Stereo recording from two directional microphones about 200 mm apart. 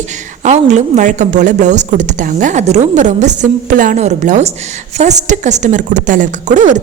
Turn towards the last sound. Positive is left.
turn(degrees=-35)  # may be behind; listen again after turning